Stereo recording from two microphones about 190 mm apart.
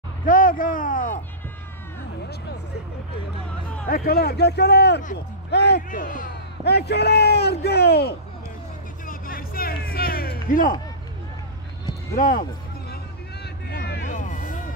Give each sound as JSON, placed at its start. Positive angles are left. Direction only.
{"t": 0.3, "sound": "speech", "side_deg": 45}
{"t": 3.8, "sound": "a man's voice", "side_deg": 50}
{"t": 5.9, "sound": "a man's voice", "side_deg": 45}
{"t": 9.0, "sound": "music", "side_deg": 50}
{"t": 12.2, "sound": "speech", "side_deg": 50}
{"t": 12.9, "sound": "a sound", "side_deg": 50}
{"t": 14.0, "sound": "music", "side_deg": 40}